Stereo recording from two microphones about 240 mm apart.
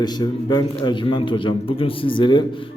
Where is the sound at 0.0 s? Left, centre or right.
Centre.